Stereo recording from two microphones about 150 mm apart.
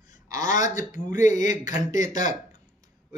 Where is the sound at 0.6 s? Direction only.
55° left (ahead or behind).